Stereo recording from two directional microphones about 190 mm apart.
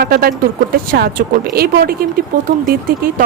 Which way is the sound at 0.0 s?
50° right (ahead or behind).